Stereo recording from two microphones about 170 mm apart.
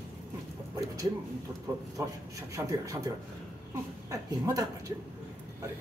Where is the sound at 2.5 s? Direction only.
20° right (ahead or behind).